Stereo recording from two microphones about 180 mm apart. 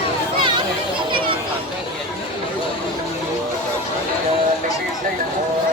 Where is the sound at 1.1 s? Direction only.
30° right (ahead or behind).